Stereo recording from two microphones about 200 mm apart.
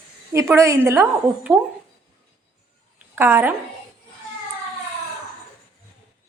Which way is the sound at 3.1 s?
10° right (ahead or behind).